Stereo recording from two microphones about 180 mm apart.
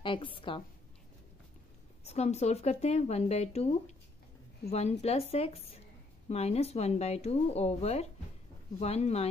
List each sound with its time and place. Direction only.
0.0 s a woman's voice: 30° left (ahead or behind)
2.0 s a woman's voice: 35° left (ahead or behind)